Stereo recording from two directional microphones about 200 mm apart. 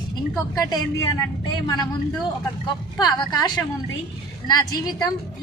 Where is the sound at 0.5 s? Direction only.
20° left (ahead or behind).